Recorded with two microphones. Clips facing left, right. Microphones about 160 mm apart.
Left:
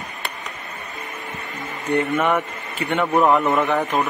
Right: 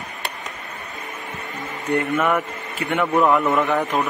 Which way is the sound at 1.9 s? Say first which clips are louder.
Left 1 dB; centre (ahead or behind).